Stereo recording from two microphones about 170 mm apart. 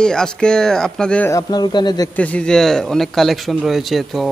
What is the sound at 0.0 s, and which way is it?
Speech, 5° left (ahead or behind).